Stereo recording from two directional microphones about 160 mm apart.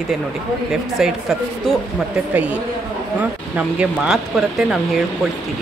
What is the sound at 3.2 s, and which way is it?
Speech, 5° right (ahead or behind).